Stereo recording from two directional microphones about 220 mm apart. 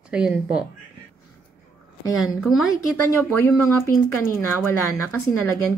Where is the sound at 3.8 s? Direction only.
10° left (ahead or behind).